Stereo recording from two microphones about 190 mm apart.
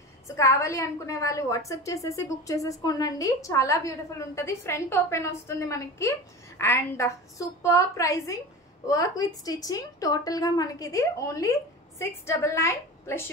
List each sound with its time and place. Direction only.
0.4 s a woman's voice: 15° left (ahead or behind)